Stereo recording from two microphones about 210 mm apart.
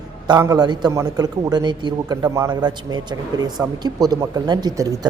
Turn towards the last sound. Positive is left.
turn(degrees=-20)  # may be behind; listen again after turning